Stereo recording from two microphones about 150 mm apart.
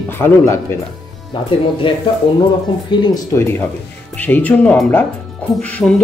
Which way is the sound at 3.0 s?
25° left (ahead or behind).